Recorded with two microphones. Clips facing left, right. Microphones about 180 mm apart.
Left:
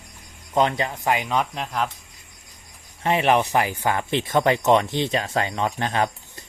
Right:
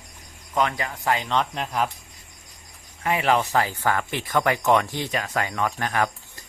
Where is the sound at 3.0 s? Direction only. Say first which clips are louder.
Left 2 dB; 25° left (ahead or behind).